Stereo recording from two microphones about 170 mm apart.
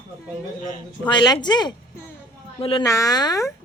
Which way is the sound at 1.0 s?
25° left (ahead or behind).